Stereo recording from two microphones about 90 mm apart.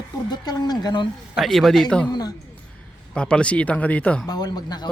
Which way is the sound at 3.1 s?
10° left (ahead or behind).